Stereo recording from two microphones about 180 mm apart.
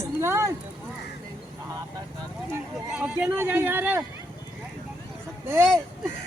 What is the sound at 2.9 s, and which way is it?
Speech, 5° right (ahead or behind).